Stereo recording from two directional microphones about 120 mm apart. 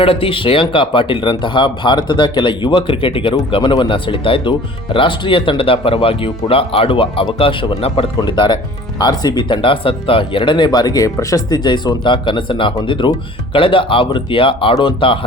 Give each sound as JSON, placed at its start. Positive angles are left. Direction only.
{"t": 0.0, "sound": "speech", "side_deg": 50}
{"t": 8.2, "sound": "speech", "side_deg": 40}